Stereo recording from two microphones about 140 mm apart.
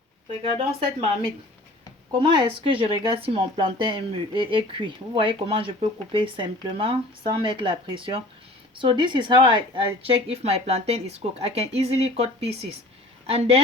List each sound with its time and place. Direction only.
0.4 s speech: 40° right (ahead or behind)
2.4 s speech: 40° right (ahead or behind)
10.2 s speech: 45° right (ahead or behind)